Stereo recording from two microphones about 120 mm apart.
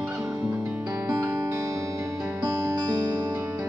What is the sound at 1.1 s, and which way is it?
Music, 25° right (ahead or behind).